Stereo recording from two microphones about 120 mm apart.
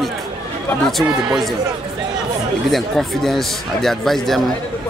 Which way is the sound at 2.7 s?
Centre (ahead or behind).